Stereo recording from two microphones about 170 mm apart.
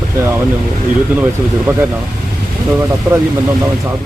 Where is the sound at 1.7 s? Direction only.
10° right (ahead or behind).